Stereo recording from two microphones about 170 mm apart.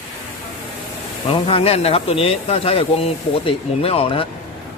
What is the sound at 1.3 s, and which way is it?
Speech, 30° left (ahead or behind).